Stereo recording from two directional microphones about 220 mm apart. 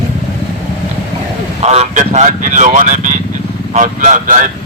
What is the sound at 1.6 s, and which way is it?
Speech, 30° right (ahead or behind).